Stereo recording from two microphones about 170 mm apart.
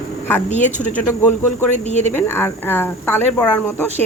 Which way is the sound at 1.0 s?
15° left (ahead or behind).